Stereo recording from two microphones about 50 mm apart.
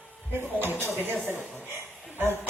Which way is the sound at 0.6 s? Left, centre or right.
Right.